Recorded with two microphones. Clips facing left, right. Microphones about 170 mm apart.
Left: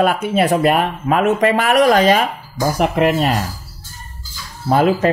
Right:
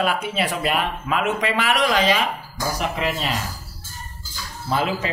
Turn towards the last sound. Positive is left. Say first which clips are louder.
# left 9 dB
turn(degrees=50)  # may be behind; listen again after turning